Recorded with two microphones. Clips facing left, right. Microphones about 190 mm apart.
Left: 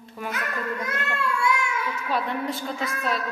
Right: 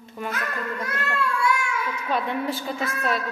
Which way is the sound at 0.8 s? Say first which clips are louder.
Right 1 dB; 20° left (ahead or behind).